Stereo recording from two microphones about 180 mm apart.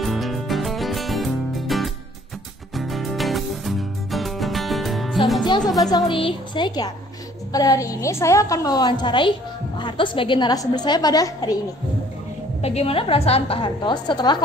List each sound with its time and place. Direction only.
0.0 s music: centre (ahead or behind)
5.6 s speech: centre (ahead or behind)
5.9 s a woman's voice: 25° left (ahead or behind)
12.6 s a woman's voice: 35° left (ahead or behind)